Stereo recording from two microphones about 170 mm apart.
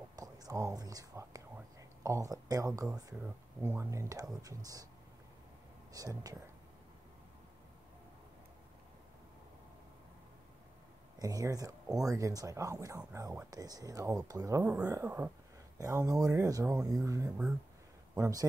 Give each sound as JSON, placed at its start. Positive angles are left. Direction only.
{"t": 0.1, "sound": "whispering", "side_deg": -20}
{"t": 3.0, "sound": "speech", "side_deg": -20}
{"t": 5.9, "sound": "speech", "side_deg": -20}
{"t": 11.1, "sound": "speech", "side_deg": -20}